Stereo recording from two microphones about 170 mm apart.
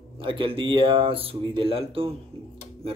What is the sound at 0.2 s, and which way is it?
Speech, 30° right (ahead or behind).